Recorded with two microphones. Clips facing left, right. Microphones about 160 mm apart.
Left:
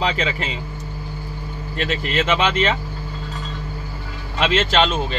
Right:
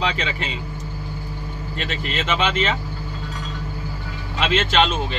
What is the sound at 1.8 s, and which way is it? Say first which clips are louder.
Speech: left 5 dB; 50° left (ahead or behind).